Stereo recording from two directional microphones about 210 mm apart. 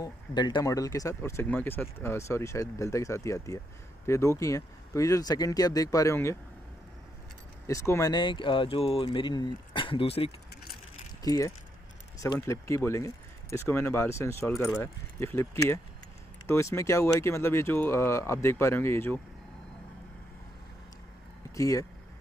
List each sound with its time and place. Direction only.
0.0 s speech: 20° left (ahead or behind)
7.6 s speech: 15° left (ahead or behind)
11.2 s speech: 15° left (ahead or behind)
21.5 s speech: 15° left (ahead or behind)